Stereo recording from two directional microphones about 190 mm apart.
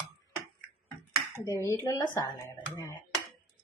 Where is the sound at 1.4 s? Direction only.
15° left (ahead or behind).